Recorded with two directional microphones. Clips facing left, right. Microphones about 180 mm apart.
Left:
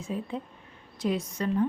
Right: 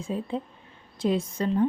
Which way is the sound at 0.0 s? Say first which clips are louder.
Right 3 dB; 30° right (ahead or behind).